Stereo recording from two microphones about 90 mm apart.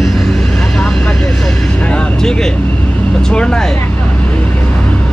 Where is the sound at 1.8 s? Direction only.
10° left (ahead or behind).